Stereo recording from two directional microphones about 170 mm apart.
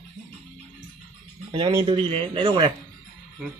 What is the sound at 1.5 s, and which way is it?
Speech, 30° right (ahead or behind).